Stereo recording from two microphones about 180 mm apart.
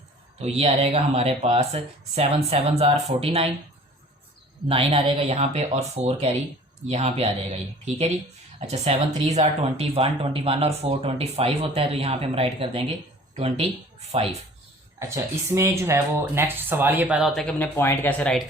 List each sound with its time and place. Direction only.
0.3 s speech: 35° right (ahead or behind)
4.7 s speech: 35° right (ahead or behind)
14.9 s speech: 15° right (ahead or behind); by 18.4 s 5° left (ahead or behind)